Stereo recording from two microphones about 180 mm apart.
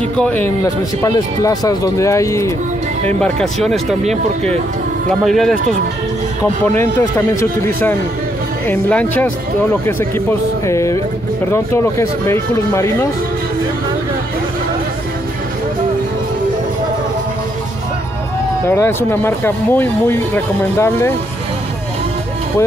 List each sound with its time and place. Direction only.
0.2 s speech: 10° left (ahead or behind)
3.2 s speech: 5° left (ahead or behind)
5.2 s speech: centre (ahead or behind)
6.4 s speech: 15° left (ahead or behind)
18.7 s speech: 10° left (ahead or behind)